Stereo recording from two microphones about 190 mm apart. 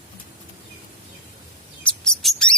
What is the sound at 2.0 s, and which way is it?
Bird, centre (ahead or behind).